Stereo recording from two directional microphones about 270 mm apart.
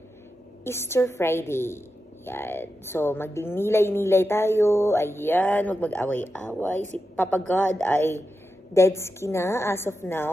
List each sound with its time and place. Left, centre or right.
0.7 s a woman's voice: centre